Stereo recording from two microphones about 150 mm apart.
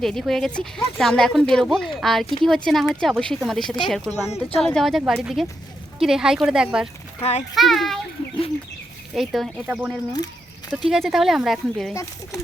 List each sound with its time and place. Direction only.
0.0 s speech: centre (ahead or behind)
4.3 s speech: 40° left (ahead or behind)
4.6 s speech: 5° left (ahead or behind)
7.2 s a child's voice: 45° left (ahead or behind)
7.5 s speech: centre (ahead or behind)
9.1 s speech: centre (ahead or behind)